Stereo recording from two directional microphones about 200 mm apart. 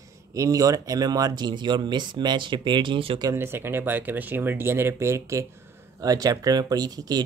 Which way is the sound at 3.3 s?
10° right (ahead or behind).